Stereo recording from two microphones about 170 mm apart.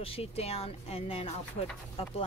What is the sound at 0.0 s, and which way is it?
Speech, 35° left (ahead or behind).